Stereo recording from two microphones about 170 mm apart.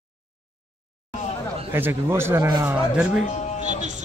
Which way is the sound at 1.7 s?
15° right (ahead or behind).